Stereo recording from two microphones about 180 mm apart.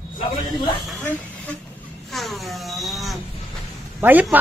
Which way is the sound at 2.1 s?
Centre (ahead or behind).